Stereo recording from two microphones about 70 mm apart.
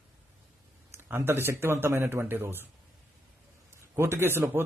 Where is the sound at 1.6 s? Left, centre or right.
Right.